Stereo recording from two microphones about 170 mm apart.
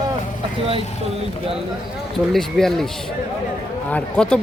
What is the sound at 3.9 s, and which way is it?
Speech, 5° left (ahead or behind).